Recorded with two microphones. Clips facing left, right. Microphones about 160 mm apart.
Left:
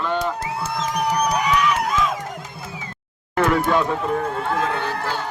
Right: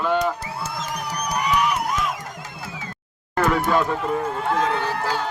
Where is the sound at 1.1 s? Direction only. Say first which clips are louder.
Left 1 dB; 90° left.